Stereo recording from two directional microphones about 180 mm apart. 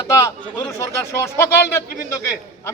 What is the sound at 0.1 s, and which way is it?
A man's voice, 20° left (ahead or behind).